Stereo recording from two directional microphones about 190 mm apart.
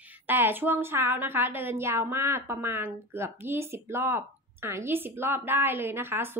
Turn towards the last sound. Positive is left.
turn(degrees=-10)  # may be behind; listen again after turning